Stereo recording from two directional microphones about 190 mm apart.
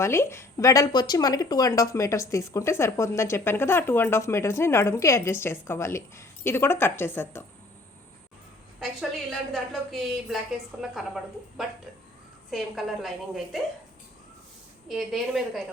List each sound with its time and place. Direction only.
0.0 s speech: 15° left (ahead or behind)
9.5 s a woman's voice: centre (ahead or behind)
14.8 s a woman's voice: centre (ahead or behind)